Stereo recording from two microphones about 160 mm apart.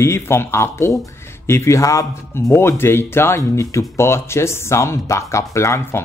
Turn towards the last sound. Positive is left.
turn(degrees=20)  # may be behind; listen again after turning